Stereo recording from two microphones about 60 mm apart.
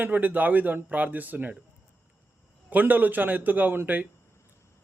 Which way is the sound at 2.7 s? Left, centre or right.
Right.